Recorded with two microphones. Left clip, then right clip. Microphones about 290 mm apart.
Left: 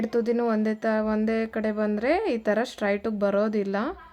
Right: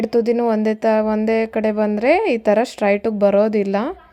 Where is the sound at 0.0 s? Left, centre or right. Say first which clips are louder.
Right 8 dB; centre.